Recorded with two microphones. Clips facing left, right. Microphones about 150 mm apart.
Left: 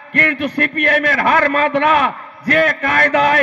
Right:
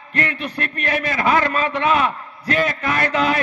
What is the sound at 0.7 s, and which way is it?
A man's voice, 60° left (ahead or behind).